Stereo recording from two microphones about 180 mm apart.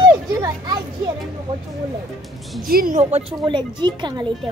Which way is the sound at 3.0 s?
35° right (ahead or behind).